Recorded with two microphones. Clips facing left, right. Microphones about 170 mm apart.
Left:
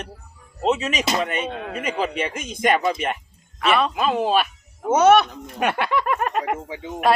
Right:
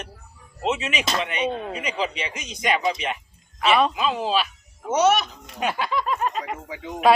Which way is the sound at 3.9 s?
50° left (ahead or behind).